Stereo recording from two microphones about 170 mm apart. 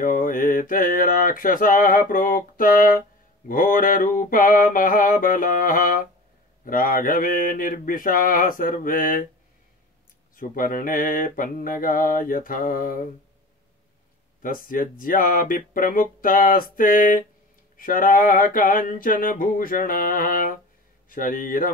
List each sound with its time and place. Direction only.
0.0 s mantra: 55° left (ahead or behind)
10.3 s mantra: 55° left (ahead or behind)
14.4 s mantra: 55° left (ahead or behind)